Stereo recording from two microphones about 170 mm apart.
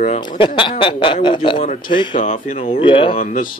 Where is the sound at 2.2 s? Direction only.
45° left (ahead or behind).